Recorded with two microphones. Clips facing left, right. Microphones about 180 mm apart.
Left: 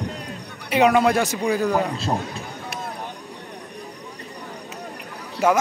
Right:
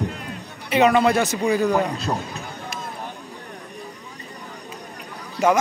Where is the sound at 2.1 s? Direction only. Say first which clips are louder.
Left 1 dB; 25° left (ahead or behind).